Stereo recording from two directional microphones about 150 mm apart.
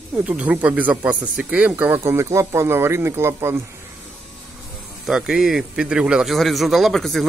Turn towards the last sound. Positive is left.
turn(degrees=0)  # may be behind; listen again after turning